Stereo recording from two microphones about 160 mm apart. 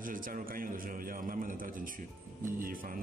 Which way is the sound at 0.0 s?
60° right (ahead or behind).